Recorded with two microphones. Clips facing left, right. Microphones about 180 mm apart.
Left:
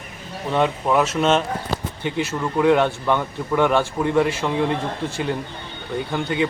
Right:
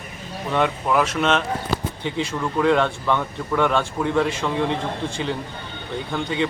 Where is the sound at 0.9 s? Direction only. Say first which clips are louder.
Left 1 dB; 25° left (ahead or behind).